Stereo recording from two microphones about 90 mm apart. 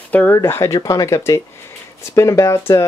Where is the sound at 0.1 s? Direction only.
20° left (ahead or behind).